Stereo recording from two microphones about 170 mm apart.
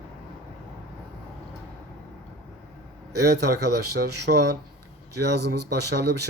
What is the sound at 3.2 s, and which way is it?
Speech, 75° right (ahead or behind).